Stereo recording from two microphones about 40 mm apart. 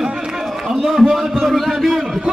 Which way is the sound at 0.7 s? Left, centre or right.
Centre.